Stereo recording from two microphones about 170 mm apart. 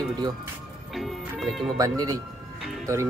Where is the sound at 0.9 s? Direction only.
Centre (ahead or behind).